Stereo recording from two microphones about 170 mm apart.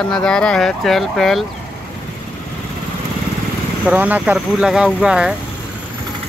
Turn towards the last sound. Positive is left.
turn(degrees=-5)  # may be behind; listen again after turning